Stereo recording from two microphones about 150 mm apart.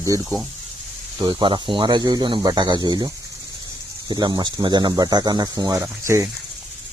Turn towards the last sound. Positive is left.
turn(degrees=-20)  # may be behind; listen again after turning